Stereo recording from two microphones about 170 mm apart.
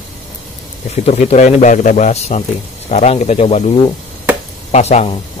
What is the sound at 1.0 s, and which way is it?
Speech, 40° left (ahead or behind).